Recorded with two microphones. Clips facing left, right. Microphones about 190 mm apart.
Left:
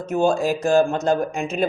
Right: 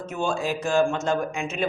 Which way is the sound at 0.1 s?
40° left (ahead or behind).